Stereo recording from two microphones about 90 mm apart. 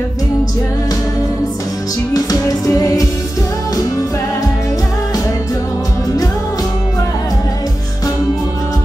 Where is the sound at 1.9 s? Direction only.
40° left (ahead or behind).